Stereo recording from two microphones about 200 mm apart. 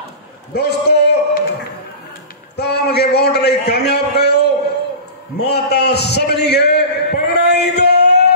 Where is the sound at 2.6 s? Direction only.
55° left (ahead or behind).